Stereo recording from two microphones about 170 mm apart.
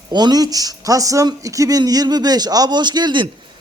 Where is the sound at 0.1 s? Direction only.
25° right (ahead or behind).